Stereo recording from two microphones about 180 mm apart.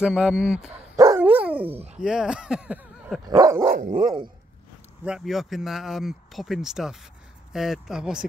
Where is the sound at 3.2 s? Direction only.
20° right (ahead or behind).